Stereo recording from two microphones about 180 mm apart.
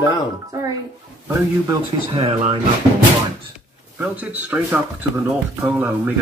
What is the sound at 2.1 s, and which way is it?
Speech, 35° right (ahead or behind).